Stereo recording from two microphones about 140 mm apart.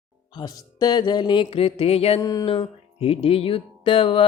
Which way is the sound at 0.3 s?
30° left (ahead or behind).